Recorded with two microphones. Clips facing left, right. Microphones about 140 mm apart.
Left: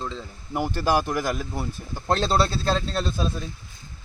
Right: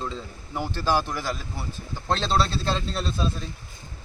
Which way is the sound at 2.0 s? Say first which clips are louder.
Left 2 dB; 10° left (ahead or behind).